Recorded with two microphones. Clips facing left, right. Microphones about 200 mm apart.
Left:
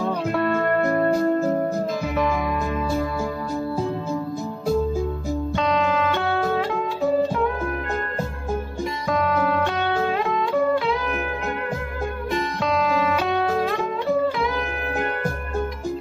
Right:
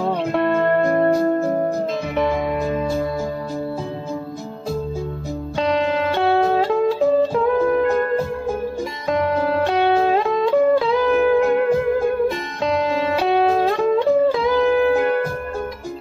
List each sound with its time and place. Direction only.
0.0 s music: 25° right (ahead or behind)
5.6 s music: 30° right (ahead or behind)
9.1 s music: 30° right (ahead or behind)
12.6 s music: 30° right (ahead or behind)